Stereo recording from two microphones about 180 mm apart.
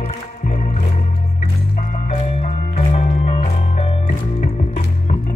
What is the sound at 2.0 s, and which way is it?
Music, 40° left (ahead or behind).